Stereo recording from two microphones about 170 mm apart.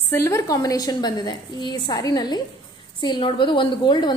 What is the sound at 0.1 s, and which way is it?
A woman's voice, 15° left (ahead or behind).